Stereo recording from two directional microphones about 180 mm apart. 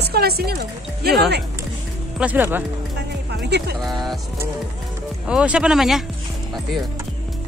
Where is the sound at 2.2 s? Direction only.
10° right (ahead or behind).